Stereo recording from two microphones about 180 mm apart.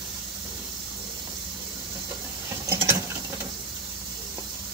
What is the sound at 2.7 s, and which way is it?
Patter, 15° right (ahead or behind).